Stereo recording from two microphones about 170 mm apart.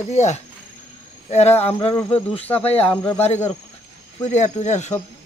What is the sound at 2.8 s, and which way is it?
Speech, 10° left (ahead or behind).